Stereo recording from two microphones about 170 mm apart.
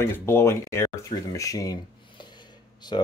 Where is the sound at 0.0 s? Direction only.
15° left (ahead or behind).